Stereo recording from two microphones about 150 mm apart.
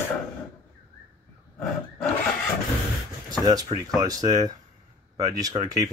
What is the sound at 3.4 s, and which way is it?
Speech, 25° right (ahead or behind).